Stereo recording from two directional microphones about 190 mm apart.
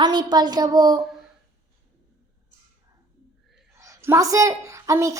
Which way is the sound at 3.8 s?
15° right (ahead or behind).